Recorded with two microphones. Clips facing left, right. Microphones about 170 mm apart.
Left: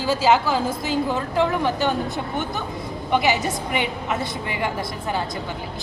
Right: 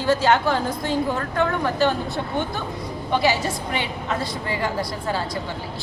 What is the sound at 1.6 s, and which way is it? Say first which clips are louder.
A woman's voice: right 1 dB; 20° left (ahead or behind).